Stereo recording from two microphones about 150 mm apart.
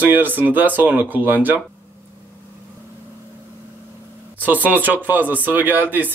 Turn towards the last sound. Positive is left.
turn(degrees=-10)  # may be behind; listen again after turning